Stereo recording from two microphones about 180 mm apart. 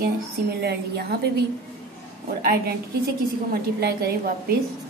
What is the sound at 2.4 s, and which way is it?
A woman's voice, 60° right (ahead or behind).